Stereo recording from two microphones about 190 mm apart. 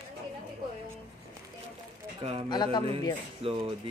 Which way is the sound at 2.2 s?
30° right (ahead or behind).